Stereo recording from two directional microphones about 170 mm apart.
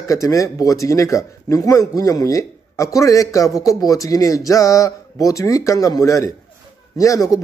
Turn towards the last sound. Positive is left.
turn(degrees=20)  # may be behind; listen again after turning